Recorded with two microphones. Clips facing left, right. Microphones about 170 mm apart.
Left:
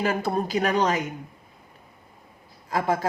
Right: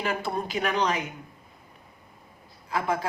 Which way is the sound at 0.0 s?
40° left (ahead or behind).